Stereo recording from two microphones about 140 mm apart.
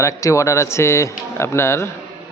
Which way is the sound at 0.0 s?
20° left (ahead or behind).